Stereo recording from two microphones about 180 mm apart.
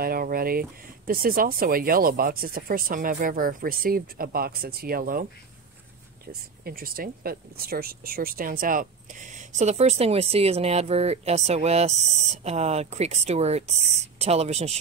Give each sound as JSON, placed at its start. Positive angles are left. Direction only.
{"t": 0.0, "sound": "speech", "side_deg": -55}